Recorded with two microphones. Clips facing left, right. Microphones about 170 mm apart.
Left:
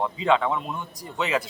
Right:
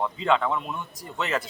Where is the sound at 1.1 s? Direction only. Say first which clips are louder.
Left 2 dB; 15° left (ahead or behind).